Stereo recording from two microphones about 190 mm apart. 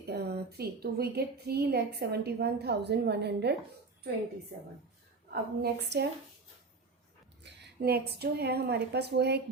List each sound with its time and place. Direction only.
0.1 s a woman's voice: 55° right (ahead or behind)
5.3 s a woman's voice: 60° right (ahead or behind)
7.4 s speech: 60° right (ahead or behind)